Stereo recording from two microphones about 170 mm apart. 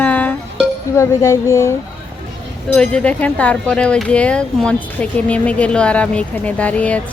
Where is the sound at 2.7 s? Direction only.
5° left (ahead or behind).